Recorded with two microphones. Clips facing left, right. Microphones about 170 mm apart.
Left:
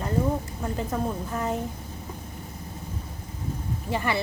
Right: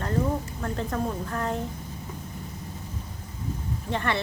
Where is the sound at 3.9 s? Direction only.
5° left (ahead or behind).